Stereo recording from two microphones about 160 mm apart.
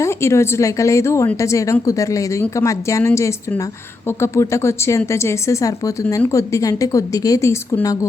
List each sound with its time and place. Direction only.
0.0 s speech: 15° left (ahead or behind)